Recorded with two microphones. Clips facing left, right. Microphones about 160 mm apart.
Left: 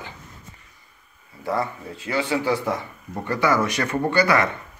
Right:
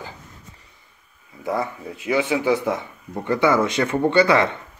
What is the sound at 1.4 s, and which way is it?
Speech, 15° right (ahead or behind).